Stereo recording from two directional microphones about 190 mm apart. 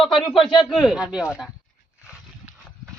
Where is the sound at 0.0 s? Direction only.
Centre (ahead or behind).